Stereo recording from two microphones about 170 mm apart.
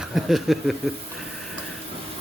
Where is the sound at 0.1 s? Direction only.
Centre (ahead or behind).